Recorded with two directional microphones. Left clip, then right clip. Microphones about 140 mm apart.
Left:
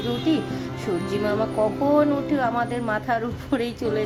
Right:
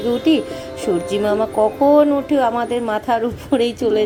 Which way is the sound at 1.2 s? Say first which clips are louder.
Right 6 dB; 15° right (ahead or behind).